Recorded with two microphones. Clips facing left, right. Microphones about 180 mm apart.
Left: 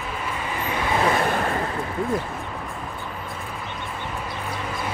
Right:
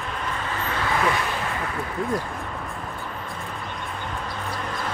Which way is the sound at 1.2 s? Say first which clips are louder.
Left 5 dB; 50° left (ahead or behind).